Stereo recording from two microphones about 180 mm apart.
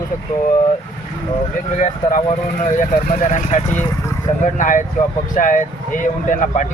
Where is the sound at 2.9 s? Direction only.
50° left (ahead or behind).